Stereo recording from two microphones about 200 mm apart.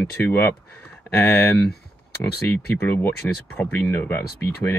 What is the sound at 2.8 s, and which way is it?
Speech, 10° left (ahead or behind).